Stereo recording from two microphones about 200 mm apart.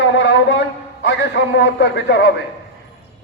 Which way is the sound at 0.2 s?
65° left (ahead or behind).